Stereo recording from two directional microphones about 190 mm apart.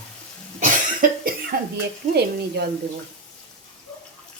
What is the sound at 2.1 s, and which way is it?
Speech, 60° right (ahead or behind).